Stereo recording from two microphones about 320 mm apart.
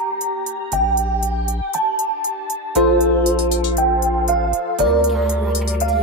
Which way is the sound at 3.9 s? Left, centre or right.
Left.